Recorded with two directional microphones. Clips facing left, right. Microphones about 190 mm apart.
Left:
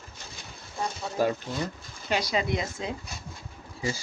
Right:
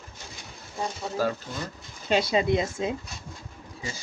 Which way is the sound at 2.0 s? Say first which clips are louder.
Right 5 dB; 25° right (ahead or behind).